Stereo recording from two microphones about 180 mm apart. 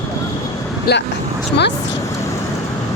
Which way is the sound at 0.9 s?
60° left (ahead or behind).